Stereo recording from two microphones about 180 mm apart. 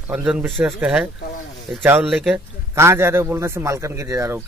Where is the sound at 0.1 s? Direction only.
10° right (ahead or behind).